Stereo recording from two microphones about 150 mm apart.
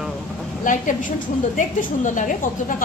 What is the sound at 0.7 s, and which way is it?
A woman's voice, 60° left (ahead or behind).